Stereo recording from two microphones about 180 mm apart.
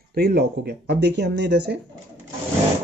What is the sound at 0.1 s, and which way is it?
Speech, 60° right (ahead or behind).